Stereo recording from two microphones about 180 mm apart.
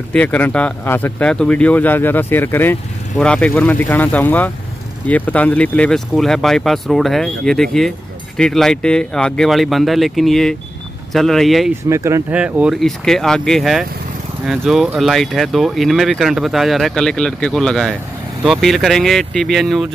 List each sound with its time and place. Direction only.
0.1 s speech: 10° left (ahead or behind)
11.9 s speech: 15° right (ahead or behind); by 19.9 s centre (ahead or behind)